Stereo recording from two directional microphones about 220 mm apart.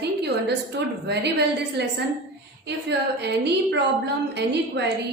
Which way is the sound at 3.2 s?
50° right (ahead or behind).